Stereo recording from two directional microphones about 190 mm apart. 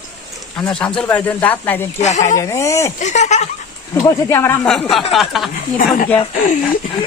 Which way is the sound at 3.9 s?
15° left (ahead or behind).